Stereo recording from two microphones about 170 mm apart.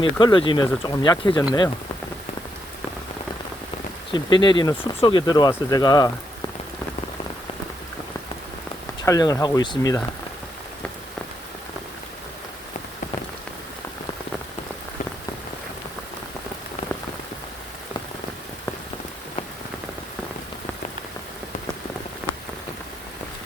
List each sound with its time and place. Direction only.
0.0 s speech: 25° left (ahead or behind)
4.1 s speech: 25° left (ahead or behind)
9.0 s speech: 20° left (ahead or behind)